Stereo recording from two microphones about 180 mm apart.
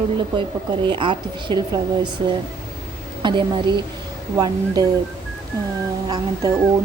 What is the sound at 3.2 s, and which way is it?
A woman's voice, 25° right (ahead or behind).